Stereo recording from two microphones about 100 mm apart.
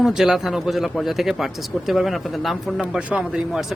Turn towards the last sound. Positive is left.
turn(degrees=-5)  # may be behind; listen again after turning